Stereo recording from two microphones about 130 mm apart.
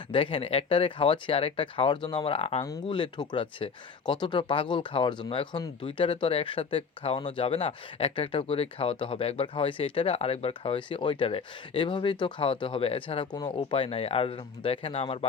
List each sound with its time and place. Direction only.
0.1 s speech: 40° left (ahead or behind)